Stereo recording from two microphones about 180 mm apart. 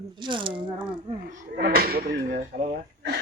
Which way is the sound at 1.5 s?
55° right (ahead or behind).